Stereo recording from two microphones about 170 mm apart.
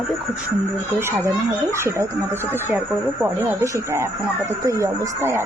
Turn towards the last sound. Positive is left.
turn(degrees=-15)  # may be behind; listen again after turning